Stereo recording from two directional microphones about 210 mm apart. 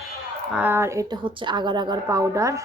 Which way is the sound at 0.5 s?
10° right (ahead or behind).